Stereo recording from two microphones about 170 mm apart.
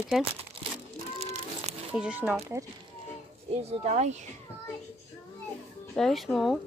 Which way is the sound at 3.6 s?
40° right (ahead or behind).